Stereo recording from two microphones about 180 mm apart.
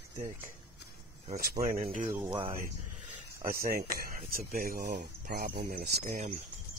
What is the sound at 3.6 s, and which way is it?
Speech, 55° right (ahead or behind).